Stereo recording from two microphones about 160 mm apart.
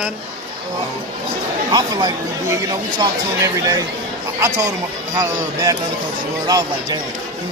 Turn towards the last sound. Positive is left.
turn(degrees=-25)  # may be behind; listen again after turning